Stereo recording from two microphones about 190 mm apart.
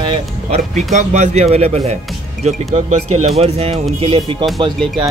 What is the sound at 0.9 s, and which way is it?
Speech, 35° right (ahead or behind).